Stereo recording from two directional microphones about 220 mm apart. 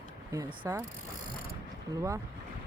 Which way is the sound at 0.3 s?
10° right (ahead or behind).